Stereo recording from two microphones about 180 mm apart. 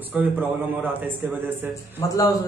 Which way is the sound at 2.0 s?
15° left (ahead or behind).